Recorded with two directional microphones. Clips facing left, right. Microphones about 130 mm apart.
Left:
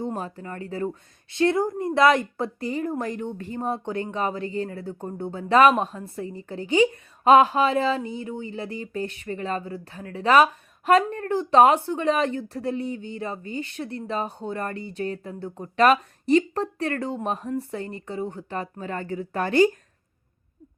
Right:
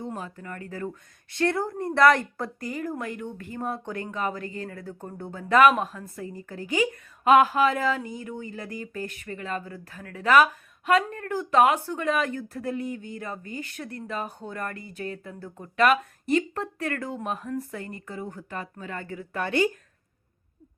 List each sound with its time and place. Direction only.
0.0 s speech: 35° left (ahead or behind)